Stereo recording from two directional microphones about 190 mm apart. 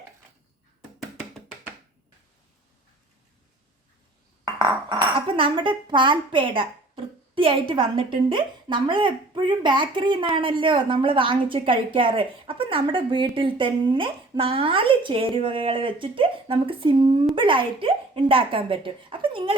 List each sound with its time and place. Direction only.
0.9 s music: centre (ahead or behind)
4.4 s speech: 20° right (ahead or behind)